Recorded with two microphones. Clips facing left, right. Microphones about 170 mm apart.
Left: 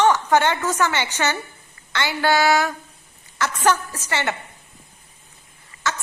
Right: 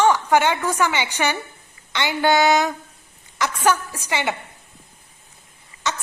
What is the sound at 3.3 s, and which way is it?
A woman's voice, 10° right (ahead or behind).